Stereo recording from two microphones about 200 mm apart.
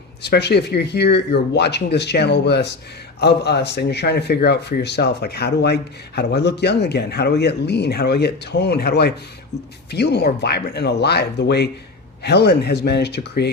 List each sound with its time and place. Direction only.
0.2 s speech: 55° left (ahead or behind)